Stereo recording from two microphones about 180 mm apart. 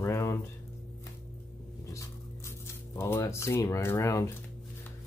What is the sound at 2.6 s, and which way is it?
Speech, 15° left (ahead or behind).